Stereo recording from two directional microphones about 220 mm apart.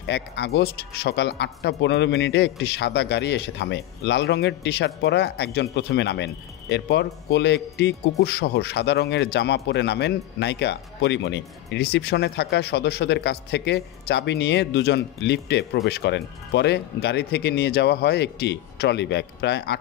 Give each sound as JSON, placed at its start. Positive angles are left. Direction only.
{"t": 0.0, "sound": "speech", "side_deg": 50}